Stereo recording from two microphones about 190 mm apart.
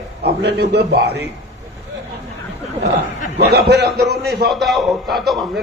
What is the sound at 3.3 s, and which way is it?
A man's voice, 60° right (ahead or behind).